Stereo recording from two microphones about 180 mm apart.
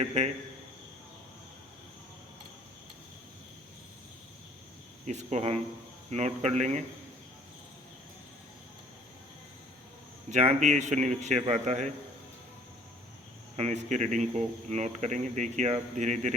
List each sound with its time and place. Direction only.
0.0 s speech: 35° right (ahead or behind)
5.0 s speech: 40° right (ahead or behind)
10.3 s speech: 40° right (ahead or behind)
13.6 s speech: 40° right (ahead or behind)